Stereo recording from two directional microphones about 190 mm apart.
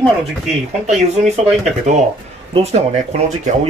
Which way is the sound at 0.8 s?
35° right (ahead or behind).